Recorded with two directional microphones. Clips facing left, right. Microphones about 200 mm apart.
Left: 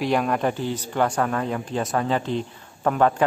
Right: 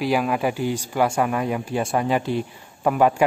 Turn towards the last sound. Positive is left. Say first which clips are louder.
# right 1 dB
turn(degrees=-10)  # may be behind; listen again after turning